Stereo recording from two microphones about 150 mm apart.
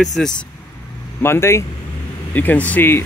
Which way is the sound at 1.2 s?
15° left (ahead or behind).